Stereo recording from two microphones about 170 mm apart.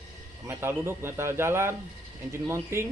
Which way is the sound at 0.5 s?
15° right (ahead or behind).